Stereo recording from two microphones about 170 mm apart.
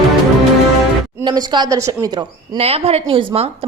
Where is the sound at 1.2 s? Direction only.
25° right (ahead or behind).